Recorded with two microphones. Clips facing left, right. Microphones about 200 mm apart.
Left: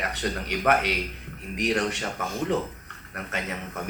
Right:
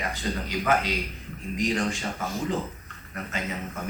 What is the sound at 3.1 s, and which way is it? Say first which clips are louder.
Speech: even; 65° left (ahead or behind).